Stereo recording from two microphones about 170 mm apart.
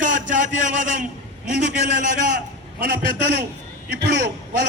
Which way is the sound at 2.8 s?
65° right (ahead or behind).